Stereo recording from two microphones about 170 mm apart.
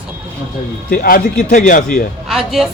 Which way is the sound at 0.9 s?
55° left (ahead or behind).